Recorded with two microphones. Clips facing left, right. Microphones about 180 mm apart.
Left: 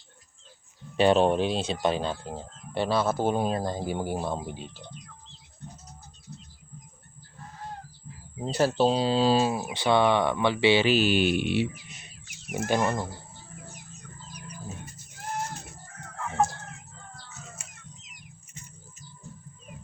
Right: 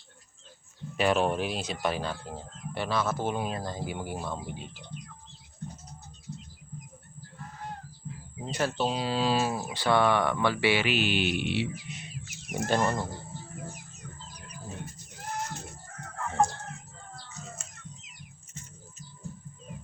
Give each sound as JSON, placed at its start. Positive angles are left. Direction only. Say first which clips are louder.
{"t": 0.9, "sound": "speech", "louder": "left 5 dB", "side_deg": 30}
{"t": 8.4, "sound": "speech", "louder": "left 6 dB", "side_deg": 35}
{"t": 12.5, "sound": "speech", "louder": "left 1 dB", "side_deg": 10}